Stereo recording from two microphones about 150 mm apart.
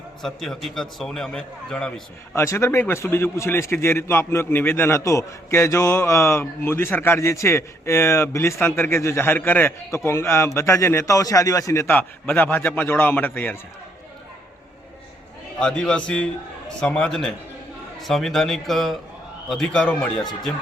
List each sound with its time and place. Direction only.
0.2 s a man's voice: centre (ahead or behind)
2.3 s a man's voice: 20° left (ahead or behind)
15.5 s a man's voice: 5° left (ahead or behind)